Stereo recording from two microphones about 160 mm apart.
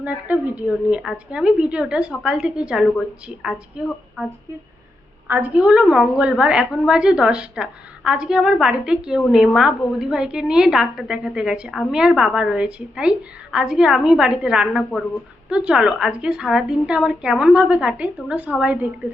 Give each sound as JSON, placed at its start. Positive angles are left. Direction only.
{"t": 0.0, "sound": "a woman's voice", "side_deg": -10}
{"t": 5.3, "sound": "a woman's voice", "side_deg": -10}